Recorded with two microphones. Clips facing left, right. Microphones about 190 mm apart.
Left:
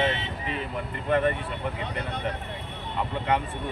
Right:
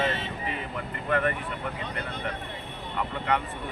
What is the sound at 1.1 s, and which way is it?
Speech, 25° left (ahead or behind).